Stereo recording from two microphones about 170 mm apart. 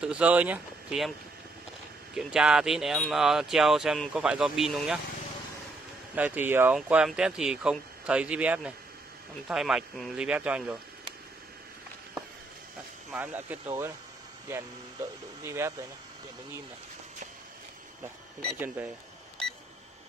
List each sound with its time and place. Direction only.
0.0 s speech: 5° right (ahead or behind)
2.1 s speech: 5° right (ahead or behind)
6.1 s speech: 10° right (ahead or behind)
13.1 s speech: 10° right (ahead or behind)
15.4 s speech: 15° right (ahead or behind)